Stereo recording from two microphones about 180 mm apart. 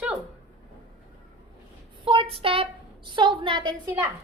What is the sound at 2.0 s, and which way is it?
A woman's voice, 30° right (ahead or behind).